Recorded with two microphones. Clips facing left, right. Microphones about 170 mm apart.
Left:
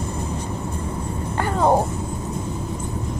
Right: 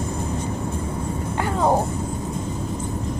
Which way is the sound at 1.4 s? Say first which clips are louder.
Left 2 dB; centre (ahead or behind).